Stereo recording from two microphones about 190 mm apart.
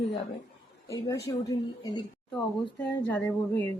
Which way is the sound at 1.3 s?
20° left (ahead or behind).